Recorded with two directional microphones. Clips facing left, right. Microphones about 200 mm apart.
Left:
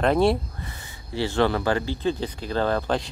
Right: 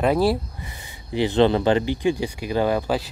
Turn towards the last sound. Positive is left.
turn(degrees=-10)  # may be behind; listen again after turning